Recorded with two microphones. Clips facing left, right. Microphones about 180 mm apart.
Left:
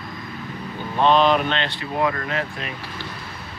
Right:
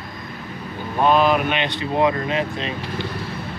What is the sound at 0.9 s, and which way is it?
Speech, 10° right (ahead or behind).